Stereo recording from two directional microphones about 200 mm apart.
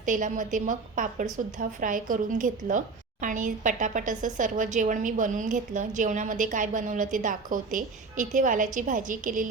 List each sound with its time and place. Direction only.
0.0 s a woman's voice: 40° right (ahead or behind)